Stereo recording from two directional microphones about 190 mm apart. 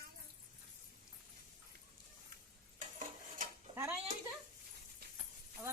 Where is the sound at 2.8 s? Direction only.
45° right (ahead or behind).